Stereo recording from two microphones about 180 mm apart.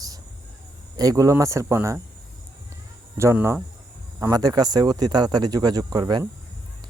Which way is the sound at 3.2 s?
15° right (ahead or behind).